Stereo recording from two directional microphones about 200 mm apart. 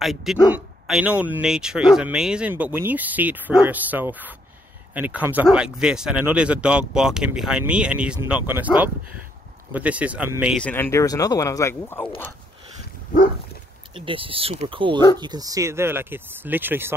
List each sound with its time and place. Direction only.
0.0 s speech: centre (ahead or behind)
10.6 s speech: 10° left (ahead or behind)
13.9 s speech: 25° right (ahead or behind); by 16.9 s 10° right (ahead or behind)